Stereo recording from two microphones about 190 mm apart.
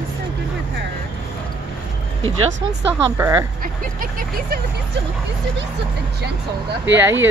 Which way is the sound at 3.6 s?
45° right (ahead or behind).